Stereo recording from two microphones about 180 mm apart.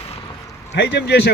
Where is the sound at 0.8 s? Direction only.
70° left (ahead or behind).